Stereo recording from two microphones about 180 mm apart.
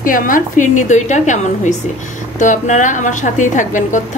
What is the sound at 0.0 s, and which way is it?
A woman's voice, 50° left (ahead or behind).